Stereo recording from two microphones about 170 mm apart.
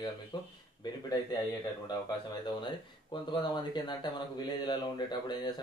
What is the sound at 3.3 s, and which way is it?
Speech, 25° left (ahead or behind).